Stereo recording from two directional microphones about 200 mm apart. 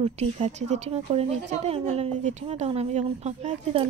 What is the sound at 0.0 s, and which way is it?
A woman's voice, 30° right (ahead or behind).